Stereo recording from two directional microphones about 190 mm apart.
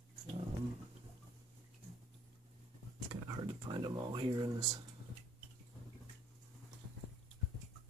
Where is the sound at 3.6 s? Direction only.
25° right (ahead or behind).